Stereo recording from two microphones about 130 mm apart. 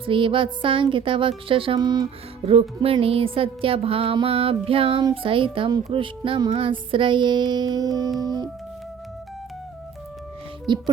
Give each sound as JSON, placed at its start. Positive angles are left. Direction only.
{"t": 0.0, "sound": "speech", "side_deg": -40}
{"t": 2.5, "sound": "music", "side_deg": -45}
{"t": 5.1, "sound": "speech", "side_deg": -45}
{"t": 10.7, "sound": "speech", "side_deg": -35}